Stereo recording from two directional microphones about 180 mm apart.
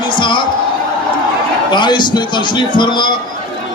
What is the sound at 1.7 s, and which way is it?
A man's voice, 25° left (ahead or behind).